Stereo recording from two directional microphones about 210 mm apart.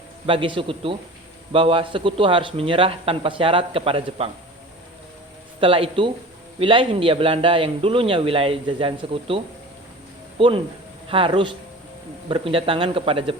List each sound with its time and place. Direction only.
0.3 s speech: 25° right (ahead or behind)
5.5 s speech: 25° right (ahead or behind)